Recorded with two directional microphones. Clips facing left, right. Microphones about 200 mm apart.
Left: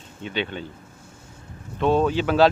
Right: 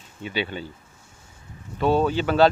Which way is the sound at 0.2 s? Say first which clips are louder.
Even; 5° right (ahead or behind).